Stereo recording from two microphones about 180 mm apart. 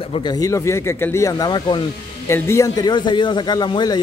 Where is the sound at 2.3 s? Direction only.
15° left (ahead or behind).